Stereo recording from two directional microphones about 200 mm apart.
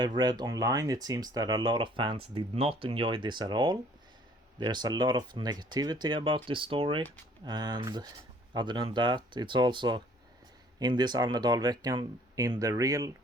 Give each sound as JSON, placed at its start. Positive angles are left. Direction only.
{"t": 0.2, "sound": "speech", "side_deg": -20}